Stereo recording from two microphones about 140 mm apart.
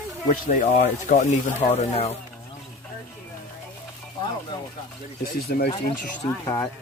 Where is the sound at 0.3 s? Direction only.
60° left (ahead or behind).